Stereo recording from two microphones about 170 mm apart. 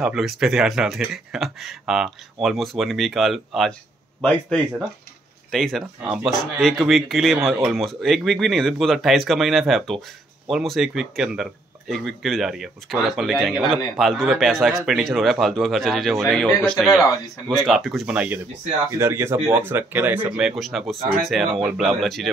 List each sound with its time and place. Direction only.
0.0 s speech: centre (ahead or behind)